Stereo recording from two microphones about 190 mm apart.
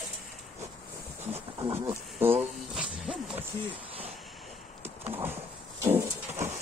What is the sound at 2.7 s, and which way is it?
Wild animals, 5° right (ahead or behind).